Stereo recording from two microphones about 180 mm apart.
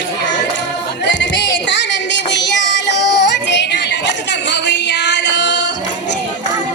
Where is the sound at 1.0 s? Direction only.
75° left (ahead or behind).